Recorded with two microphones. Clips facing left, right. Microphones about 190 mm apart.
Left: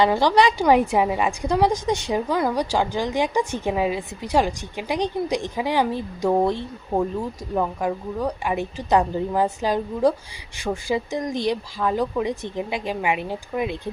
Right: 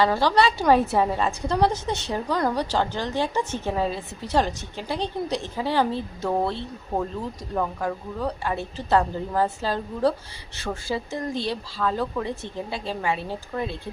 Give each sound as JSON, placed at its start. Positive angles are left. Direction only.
{"t": 0.0, "sound": "a woman's voice", "side_deg": 15}